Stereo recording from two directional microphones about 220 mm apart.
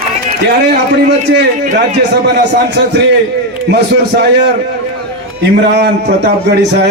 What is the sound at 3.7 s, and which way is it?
Speech, 50° right (ahead or behind).